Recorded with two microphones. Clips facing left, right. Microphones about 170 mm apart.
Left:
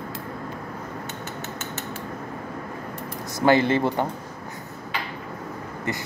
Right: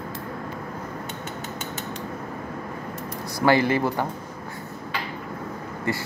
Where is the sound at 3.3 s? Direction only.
20° left (ahead or behind).